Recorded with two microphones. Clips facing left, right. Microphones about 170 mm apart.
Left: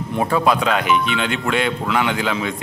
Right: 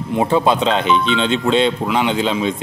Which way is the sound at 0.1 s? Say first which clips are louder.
Right 3 dB; 25° right (ahead or behind).